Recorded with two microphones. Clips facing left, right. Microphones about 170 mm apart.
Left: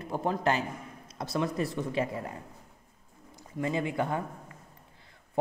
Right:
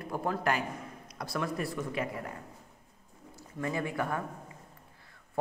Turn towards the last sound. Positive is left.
turn(degrees=20)  # may be behind; listen again after turning